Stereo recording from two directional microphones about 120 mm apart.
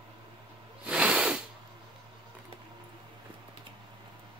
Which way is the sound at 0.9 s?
10° right (ahead or behind).